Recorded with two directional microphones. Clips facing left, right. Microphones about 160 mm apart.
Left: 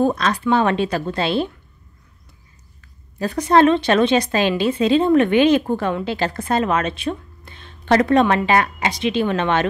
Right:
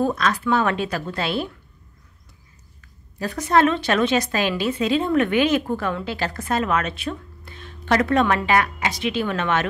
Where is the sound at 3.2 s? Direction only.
25° left (ahead or behind).